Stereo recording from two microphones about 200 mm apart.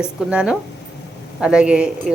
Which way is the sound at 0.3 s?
5° right (ahead or behind).